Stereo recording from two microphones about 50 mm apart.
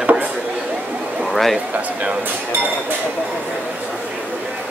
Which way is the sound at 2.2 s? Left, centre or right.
Right.